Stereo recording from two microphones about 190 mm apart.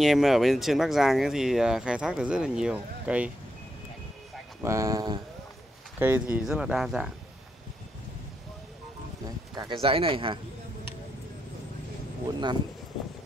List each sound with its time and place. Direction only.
0.0 s speech: centre (ahead or behind)
4.6 s speech: 15° right (ahead or behind)
9.6 s speech: 25° right (ahead or behind)
12.3 s speech: 25° right (ahead or behind)